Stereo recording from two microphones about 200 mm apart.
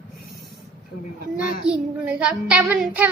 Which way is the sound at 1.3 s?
5° right (ahead or behind).